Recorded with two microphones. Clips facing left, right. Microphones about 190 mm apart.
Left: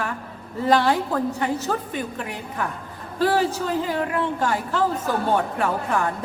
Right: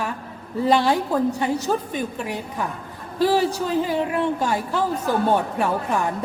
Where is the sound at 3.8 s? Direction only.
15° right (ahead or behind).